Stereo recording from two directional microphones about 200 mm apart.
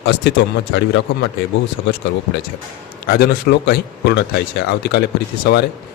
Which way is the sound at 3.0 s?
50° left (ahead or behind).